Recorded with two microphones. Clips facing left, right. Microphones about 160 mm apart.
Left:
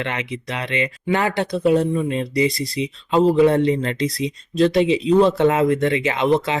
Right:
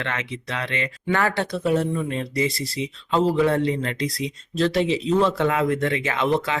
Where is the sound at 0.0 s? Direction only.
15° left (ahead or behind).